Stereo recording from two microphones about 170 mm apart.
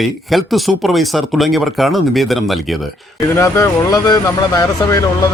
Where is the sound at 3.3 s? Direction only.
15° left (ahead or behind).